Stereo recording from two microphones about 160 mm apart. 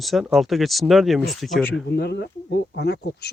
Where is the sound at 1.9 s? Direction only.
90° left.